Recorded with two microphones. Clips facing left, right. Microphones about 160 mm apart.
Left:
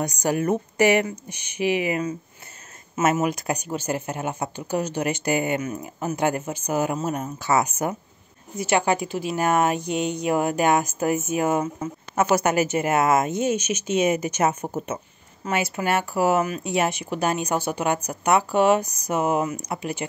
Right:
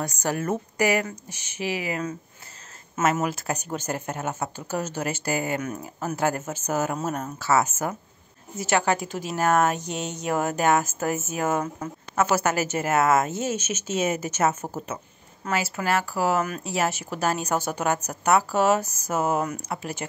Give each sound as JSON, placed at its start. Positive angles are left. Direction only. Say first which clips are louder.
{"t": 0.0, "sound": "speech", "louder": "left 4 dB", "side_deg": 15}
{"t": 0.7, "sound": "speech", "louder": "left 4 dB", "side_deg": 25}
{"t": 3.2, "sound": "speech", "louder": "left 3 dB", "side_deg": 15}
{"t": 5.6, "sound": "speech", "louder": "left 2 dB", "side_deg": 5}